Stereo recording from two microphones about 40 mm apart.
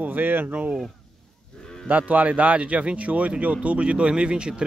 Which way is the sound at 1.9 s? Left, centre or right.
Right.